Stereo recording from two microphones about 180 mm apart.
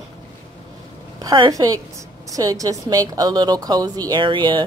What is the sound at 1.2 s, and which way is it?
A woman's voice, 25° right (ahead or behind).